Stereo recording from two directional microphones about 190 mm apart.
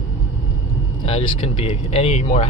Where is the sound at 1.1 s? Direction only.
30° left (ahead or behind).